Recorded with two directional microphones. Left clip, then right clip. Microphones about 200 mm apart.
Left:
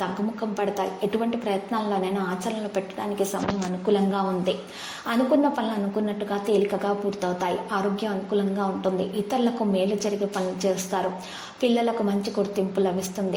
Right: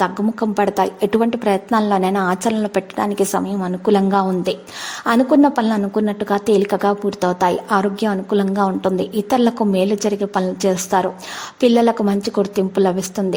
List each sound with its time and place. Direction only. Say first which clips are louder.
0.0 s a woman's voice: right 9 dB; 45° right (ahead or behind)